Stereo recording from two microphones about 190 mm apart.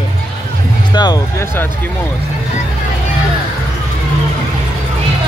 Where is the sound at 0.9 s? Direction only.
20° left (ahead or behind).